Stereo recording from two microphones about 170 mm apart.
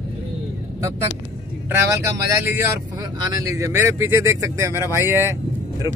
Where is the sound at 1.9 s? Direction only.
15° right (ahead or behind).